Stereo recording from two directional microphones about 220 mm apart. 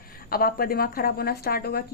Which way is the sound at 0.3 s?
40° left (ahead or behind).